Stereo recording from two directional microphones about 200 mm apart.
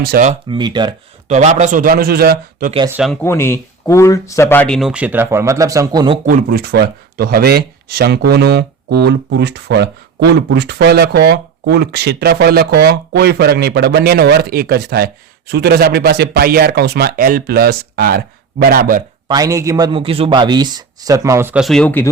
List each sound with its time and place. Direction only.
0.0 s speech: 50° right (ahead or behind)
0.4 s speech: 25° right (ahead or behind)
1.3 s speech: 35° right (ahead or behind)
2.9 s speech: centre (ahead or behind); by 6.1 s 20° right (ahead or behind)
6.2 s speech: 50° right (ahead or behind)
19.3 s speech: 15° right (ahead or behind); by 22.1 s 10° left (ahead or behind)